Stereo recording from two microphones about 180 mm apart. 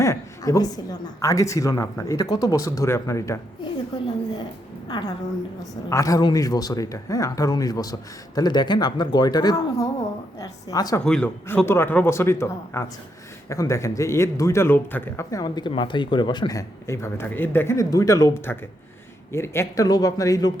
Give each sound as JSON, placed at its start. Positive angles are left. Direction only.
{"t": 0.0, "sound": "speech", "side_deg": 15}
{"t": 4.9, "sound": "a woman's voice", "side_deg": 25}
{"t": 11.0, "sound": "speech", "side_deg": 5}